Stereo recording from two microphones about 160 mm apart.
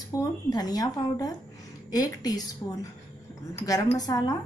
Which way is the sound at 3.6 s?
20° left (ahead or behind).